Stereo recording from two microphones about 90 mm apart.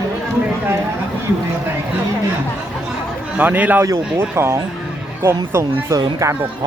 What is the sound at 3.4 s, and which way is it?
Speech, 20° right (ahead or behind).